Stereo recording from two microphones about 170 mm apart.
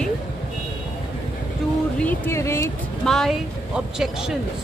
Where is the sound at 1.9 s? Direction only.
10° left (ahead or behind).